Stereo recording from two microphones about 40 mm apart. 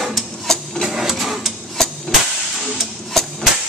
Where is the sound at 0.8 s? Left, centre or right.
Centre.